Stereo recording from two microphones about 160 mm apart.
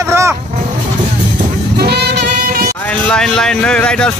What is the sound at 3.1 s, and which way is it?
Speech, 5° left (ahead or behind).